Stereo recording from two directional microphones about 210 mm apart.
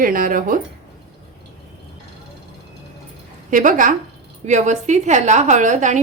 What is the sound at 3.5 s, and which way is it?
A woman's voice, 40° right (ahead or behind).